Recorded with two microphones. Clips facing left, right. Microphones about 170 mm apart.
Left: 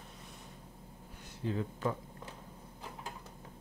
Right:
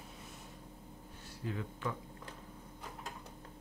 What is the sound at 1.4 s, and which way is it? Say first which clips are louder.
Speech: left 5 dB; 30° left (ahead or behind).